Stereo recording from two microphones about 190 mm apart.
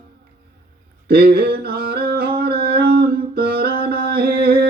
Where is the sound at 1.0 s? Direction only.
55° right (ahead or behind).